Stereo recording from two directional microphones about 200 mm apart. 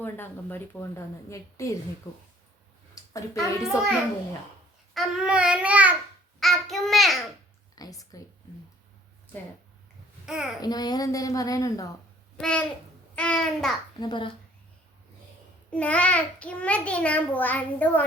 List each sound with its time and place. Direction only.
0.0 s a child's voice: 10° left (ahead or behind)
2.9 s a child's voice: 15° left (ahead or behind)
4.9 s babbling: 5° right (ahead or behind)
7.8 s a child's voice: 15° left (ahead or behind)
10.2 s babbling: 5° right (ahead or behind)
10.6 s a child's voice: 20° left (ahead or behind)
12.4 s babbling: 5° left (ahead or behind)
14.0 s speech: 25° left (ahead or behind)
15.7 s a child's voice: 5° left (ahead or behind)